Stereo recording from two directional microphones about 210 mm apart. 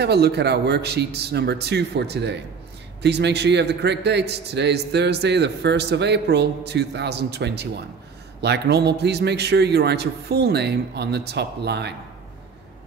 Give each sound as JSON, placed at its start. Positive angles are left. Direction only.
{"t": 0.0, "sound": "a man's voice", "side_deg": -50}